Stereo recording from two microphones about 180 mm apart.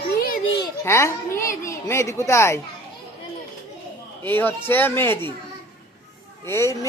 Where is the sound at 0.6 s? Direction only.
15° left (ahead or behind).